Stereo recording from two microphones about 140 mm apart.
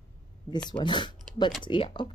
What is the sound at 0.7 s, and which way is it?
Speech, 35° left (ahead or behind).